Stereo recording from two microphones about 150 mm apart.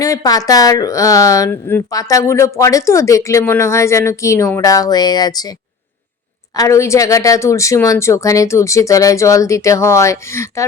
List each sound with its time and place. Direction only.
0.0 s speech: 20° left (ahead or behind)
6.6 s speech: 20° left (ahead or behind)